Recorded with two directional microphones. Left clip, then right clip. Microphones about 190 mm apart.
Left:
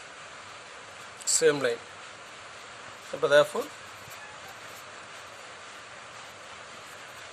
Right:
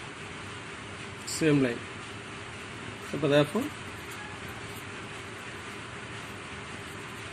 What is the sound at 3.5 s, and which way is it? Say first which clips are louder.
Speech: even; 90° left.